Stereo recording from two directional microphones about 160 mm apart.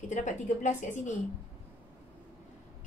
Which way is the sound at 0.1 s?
50° left (ahead or behind).